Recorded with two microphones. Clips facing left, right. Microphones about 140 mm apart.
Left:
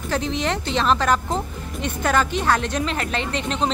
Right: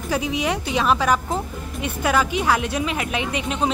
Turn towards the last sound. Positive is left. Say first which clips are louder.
# even
turn(degrees=-10)  # may be behind; listen again after turning